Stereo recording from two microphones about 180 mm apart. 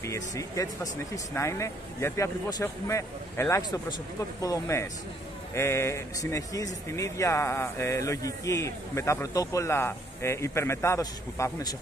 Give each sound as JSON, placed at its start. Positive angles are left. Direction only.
{"t": 0.0, "sound": "speech", "side_deg": 15}